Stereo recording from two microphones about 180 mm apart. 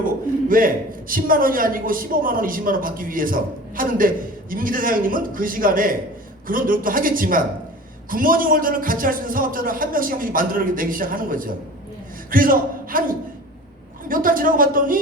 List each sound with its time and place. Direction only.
0.4 s a man's voice: 50° right (ahead or behind)
14.1 s a man's voice: 50° right (ahead or behind)